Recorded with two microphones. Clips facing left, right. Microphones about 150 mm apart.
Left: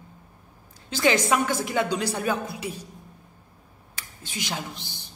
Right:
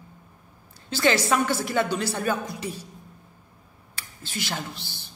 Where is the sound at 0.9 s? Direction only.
15° left (ahead or behind).